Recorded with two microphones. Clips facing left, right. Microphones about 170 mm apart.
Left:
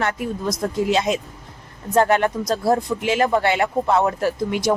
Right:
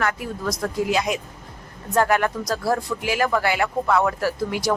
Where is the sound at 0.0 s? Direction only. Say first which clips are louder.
Left 2 dB; 25° left (ahead or behind).